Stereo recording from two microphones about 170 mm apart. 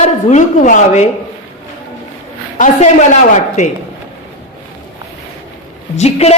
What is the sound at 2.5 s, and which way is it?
A woman's voice, 45° left (ahead or behind).